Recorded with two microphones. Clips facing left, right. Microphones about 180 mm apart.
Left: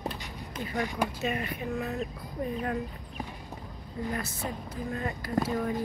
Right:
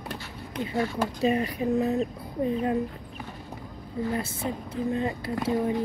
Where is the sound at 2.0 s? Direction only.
25° right (ahead or behind).